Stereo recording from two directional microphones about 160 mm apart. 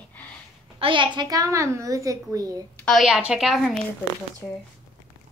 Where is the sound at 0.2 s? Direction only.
10° left (ahead or behind).